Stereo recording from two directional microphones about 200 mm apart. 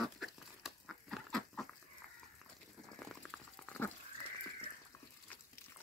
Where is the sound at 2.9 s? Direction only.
5° left (ahead or behind).